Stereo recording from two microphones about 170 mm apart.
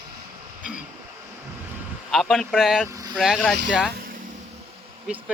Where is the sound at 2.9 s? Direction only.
20° right (ahead or behind).